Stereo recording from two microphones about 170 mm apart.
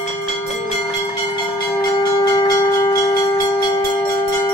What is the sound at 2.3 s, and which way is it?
Church bell, 20° left (ahead or behind).